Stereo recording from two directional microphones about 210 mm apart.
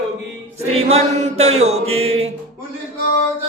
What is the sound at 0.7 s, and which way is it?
Mantra, 30° right (ahead or behind).